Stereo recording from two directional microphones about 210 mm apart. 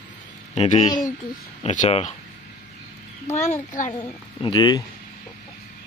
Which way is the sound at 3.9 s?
20° left (ahead or behind).